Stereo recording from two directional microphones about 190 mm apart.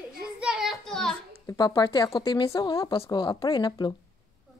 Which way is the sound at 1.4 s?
20° left (ahead or behind).